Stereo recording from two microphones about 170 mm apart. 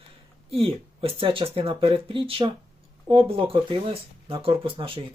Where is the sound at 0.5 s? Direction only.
35° right (ahead or behind).